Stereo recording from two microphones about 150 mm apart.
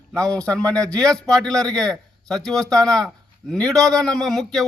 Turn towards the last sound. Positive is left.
turn(degrees=0)  # may be behind; listen again after turning